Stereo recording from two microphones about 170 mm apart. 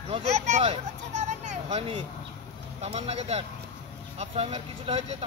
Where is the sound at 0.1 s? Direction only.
40° right (ahead or behind).